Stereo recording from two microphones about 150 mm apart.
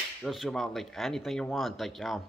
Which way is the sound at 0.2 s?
Centre (ahead or behind).